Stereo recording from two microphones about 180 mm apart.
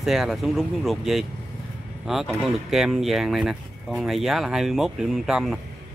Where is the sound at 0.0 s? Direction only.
Centre (ahead or behind).